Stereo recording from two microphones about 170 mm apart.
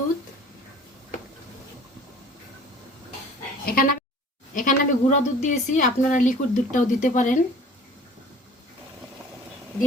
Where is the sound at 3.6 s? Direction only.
60° left (ahead or behind).